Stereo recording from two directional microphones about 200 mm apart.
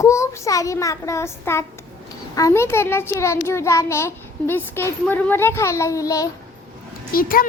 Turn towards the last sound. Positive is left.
turn(degrees=45)  # may be behind; listen again after turning